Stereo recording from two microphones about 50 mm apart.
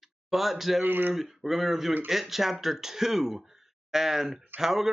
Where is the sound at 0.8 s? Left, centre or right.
Right.